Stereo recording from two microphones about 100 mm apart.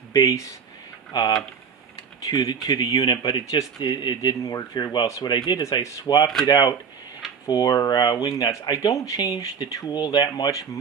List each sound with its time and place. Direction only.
0.1 s speech: 35° left (ahead or behind)
4.4 s speech: 35° left (ahead or behind)
6.0 s speech: 45° left (ahead or behind)